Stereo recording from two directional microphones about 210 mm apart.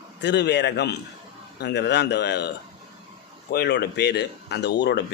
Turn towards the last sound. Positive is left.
turn(degrees=55)  # may be behind; listen again after turning